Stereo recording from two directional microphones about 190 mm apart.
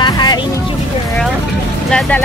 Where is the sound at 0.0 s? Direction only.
20° left (ahead or behind).